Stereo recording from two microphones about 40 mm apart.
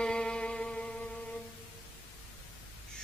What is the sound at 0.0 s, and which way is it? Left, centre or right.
Music, left.